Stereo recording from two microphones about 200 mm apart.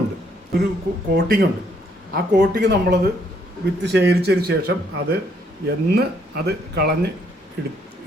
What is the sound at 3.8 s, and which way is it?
Speech, 60° right (ahead or behind).